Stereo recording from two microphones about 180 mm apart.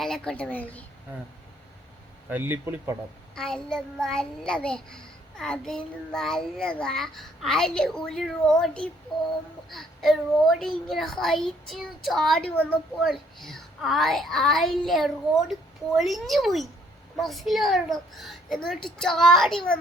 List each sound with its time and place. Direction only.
0.0 s a woman's voice: 5° left (ahead or behind)
2.3 s speech: 10° right (ahead or behind)
3.3 s a child's voice: 5° left (ahead or behind)